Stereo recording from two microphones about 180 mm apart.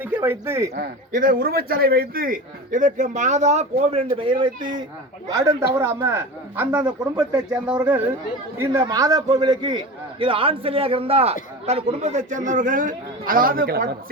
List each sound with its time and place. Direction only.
0.0 s speech: 10° right (ahead or behind)
0.8 s a man's voice: 55° right (ahead or behind); by 6.8 s 10° right (ahead or behind)
8.5 s a man's voice: 20° right (ahead or behind); by 13.9 s 60° right (ahead or behind)